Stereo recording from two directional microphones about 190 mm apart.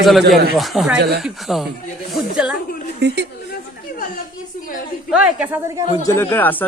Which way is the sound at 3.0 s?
60° right (ahead or behind).